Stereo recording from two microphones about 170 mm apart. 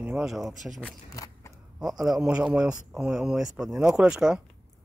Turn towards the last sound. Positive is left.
turn(degrees=-5)  # may be behind; listen again after turning